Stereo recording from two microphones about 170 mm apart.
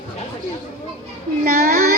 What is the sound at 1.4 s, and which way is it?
Speech, 60° right (ahead or behind).